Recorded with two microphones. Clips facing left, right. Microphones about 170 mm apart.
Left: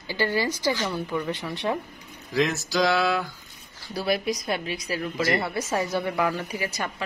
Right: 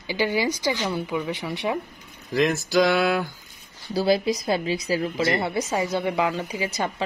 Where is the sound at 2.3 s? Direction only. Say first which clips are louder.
Right 4 dB; 55° right (ahead or behind).